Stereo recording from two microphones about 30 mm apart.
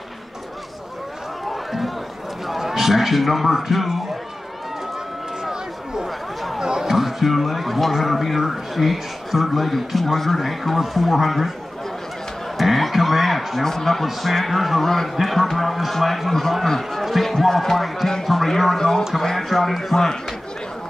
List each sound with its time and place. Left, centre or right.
1.5 s run: centre
2.6 s a man's voice: centre
5.4 s run: centre
6.0 s chatter: centre
6.6 s a sound: centre
6.9 s speech: centre
12.5 s a sound: centre
13.6 s speech: centre
14.0 s speech: centre
14.8 s a man's voice: centre
17.0 s a sound: centre
17.5 s speech: centre